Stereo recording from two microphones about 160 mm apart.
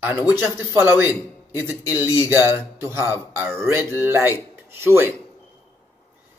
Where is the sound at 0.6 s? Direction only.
15° right (ahead or behind).